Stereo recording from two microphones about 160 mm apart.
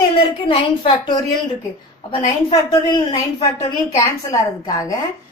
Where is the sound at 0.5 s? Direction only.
30° left (ahead or behind).